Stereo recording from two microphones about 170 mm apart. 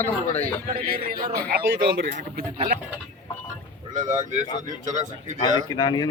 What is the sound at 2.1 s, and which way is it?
Speech, 50° right (ahead or behind).